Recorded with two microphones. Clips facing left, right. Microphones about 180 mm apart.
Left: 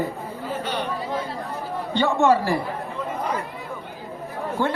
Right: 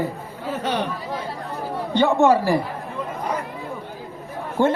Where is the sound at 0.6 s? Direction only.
70° right (ahead or behind).